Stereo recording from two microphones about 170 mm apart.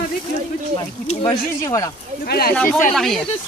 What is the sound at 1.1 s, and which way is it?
Speech, 25° left (ahead or behind).